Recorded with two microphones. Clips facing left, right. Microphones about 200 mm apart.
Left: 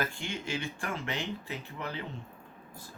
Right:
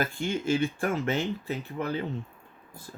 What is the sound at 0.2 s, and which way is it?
Speech, 40° right (ahead or behind).